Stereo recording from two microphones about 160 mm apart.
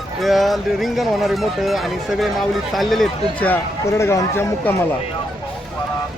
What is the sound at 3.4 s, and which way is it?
A man's voice, 15° left (ahead or behind).